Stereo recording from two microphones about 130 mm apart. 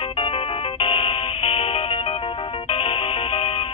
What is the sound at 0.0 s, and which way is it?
Music, 45° left (ahead or behind).